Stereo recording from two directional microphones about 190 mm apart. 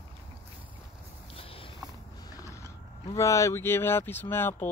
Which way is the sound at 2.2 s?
15° left (ahead or behind).